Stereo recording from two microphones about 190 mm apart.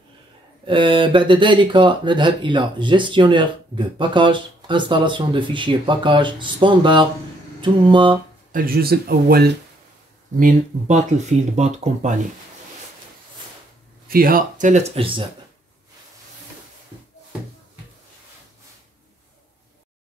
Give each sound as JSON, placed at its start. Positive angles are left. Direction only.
{"t": 0.7, "sound": "speech", "side_deg": -25}
{"t": 8.5, "sound": "speech", "side_deg": -50}
{"t": 10.4, "sound": "speech", "side_deg": -40}
{"t": 14.0, "sound": "speech", "side_deg": -50}